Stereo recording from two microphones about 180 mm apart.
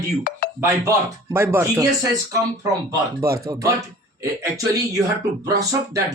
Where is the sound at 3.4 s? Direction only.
20° right (ahead or behind).